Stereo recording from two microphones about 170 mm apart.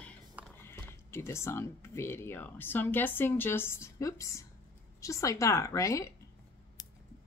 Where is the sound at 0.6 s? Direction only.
15° left (ahead or behind).